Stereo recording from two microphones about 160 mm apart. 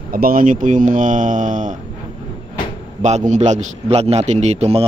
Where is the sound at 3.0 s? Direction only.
45° right (ahead or behind).